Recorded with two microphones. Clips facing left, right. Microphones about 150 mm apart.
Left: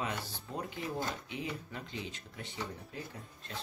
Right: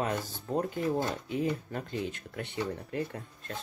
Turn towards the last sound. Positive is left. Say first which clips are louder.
# right 8 dB
turn(degrees=-60)  # may be behind; listen again after turning